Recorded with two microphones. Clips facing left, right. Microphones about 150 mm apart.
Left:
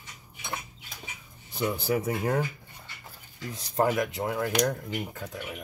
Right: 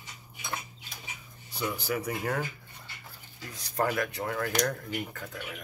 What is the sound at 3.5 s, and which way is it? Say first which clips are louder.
Speech: left 4 dB; 20° left (ahead or behind).